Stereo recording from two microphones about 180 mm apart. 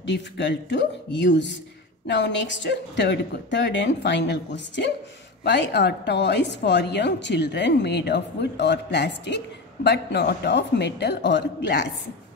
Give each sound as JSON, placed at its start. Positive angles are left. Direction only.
{"t": 0.0, "sound": "a woman's voice", "side_deg": 75}